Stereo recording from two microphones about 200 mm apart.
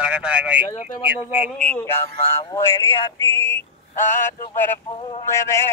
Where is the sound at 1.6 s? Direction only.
5° left (ahead or behind).